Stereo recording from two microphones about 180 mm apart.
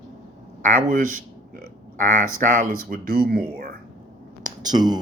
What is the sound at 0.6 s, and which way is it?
Speech, 45° right (ahead or behind).